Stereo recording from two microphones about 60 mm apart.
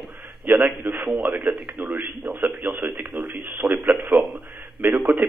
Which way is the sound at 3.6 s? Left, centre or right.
Centre.